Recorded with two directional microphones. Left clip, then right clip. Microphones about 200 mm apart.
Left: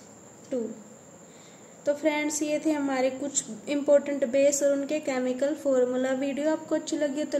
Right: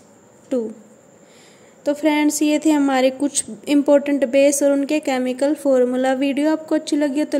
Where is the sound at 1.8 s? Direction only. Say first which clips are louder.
Right 8 dB; 40° right (ahead or behind).